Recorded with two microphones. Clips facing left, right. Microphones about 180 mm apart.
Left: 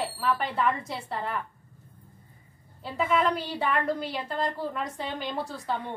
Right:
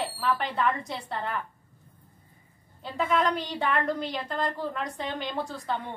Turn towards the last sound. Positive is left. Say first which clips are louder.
# even
turn(degrees=5)  # may be behind; listen again after turning